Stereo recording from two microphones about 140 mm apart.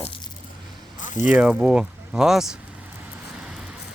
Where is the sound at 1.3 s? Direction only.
10° right (ahead or behind).